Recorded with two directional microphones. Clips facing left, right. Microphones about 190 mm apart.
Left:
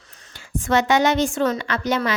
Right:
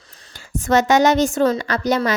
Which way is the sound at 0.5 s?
45° right (ahead or behind).